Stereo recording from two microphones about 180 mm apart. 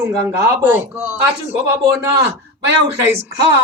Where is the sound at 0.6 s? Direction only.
10° right (ahead or behind).